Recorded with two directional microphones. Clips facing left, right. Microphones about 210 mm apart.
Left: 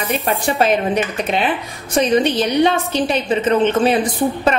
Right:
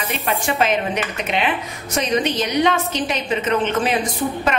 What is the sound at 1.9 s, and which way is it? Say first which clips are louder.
A woman's voice: left 5 dB; 30° left (ahead or behind).